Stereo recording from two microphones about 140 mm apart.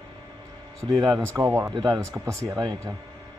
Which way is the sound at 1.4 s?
20° right (ahead or behind).